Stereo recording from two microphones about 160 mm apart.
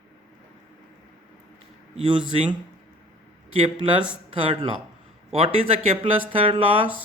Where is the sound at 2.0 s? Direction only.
30° right (ahead or behind).